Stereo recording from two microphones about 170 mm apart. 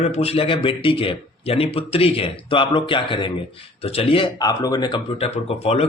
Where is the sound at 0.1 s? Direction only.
35° left (ahead or behind).